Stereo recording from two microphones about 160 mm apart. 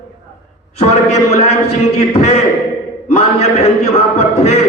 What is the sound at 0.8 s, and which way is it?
A man's voice, 40° left (ahead or behind).